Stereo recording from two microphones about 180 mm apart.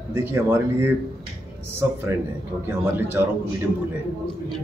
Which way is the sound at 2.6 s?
10° right (ahead or behind).